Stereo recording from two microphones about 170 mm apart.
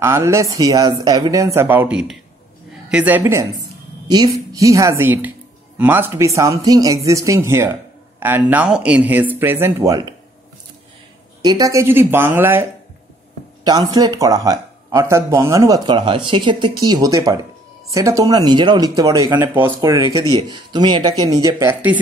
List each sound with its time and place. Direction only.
0.0 s speech: 15° right (ahead or behind)
11.4 s speech: 20° right (ahead or behind)
13.7 s speech: 25° right (ahead or behind)